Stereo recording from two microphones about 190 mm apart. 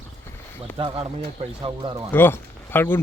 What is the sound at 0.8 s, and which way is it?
Speech, 25° right (ahead or behind).